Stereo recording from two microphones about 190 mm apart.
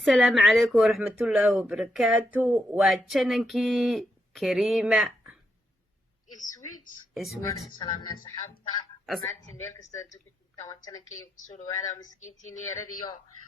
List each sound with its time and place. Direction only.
0.0 s speech: centre (ahead or behind)
6.3 s a woman's voice: 45° left (ahead or behind)
7.1 s speech: centre (ahead or behind)
7.4 s speech: 20° left (ahead or behind)
11.3 s speech: 40° left (ahead or behind)